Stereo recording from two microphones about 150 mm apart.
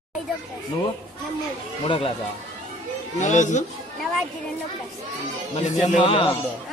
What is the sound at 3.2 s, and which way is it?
Speech, 55° left (ahead or behind).